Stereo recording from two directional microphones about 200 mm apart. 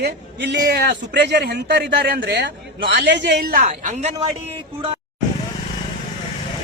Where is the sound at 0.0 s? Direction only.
60° right (ahead or behind); by 4.3 s 40° right (ahead or behind).